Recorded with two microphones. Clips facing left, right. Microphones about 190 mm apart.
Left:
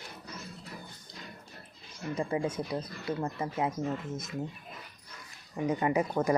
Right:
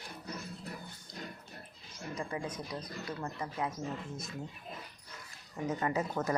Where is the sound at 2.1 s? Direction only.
25° left (ahead or behind).